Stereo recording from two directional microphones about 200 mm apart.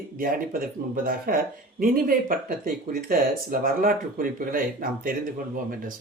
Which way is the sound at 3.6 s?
45° right (ahead or behind).